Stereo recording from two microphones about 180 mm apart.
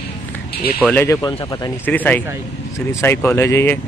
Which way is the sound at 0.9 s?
10° left (ahead or behind).